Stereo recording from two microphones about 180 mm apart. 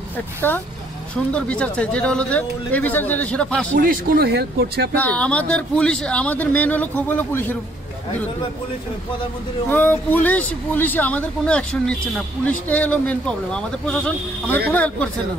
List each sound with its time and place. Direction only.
1.3 s speech: 5° left (ahead or behind)
3.7 s speech: 50° right (ahead or behind)
4.9 s speech: 5° left (ahead or behind)
9.7 s speech: 10° left (ahead or behind)